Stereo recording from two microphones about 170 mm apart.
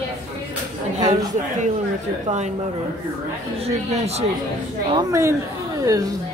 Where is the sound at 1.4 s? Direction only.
40° right (ahead or behind).